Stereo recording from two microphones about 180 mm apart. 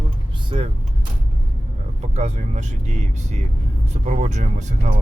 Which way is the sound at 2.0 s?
40° right (ahead or behind).